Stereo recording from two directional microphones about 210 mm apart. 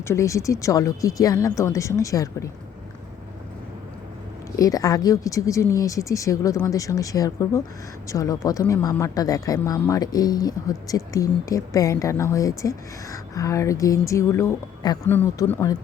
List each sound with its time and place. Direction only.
0.1 s speech: 15° left (ahead or behind)
4.5 s speech: 15° left (ahead or behind)